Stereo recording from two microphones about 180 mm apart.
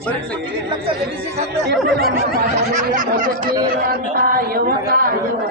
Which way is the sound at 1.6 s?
60° right (ahead or behind).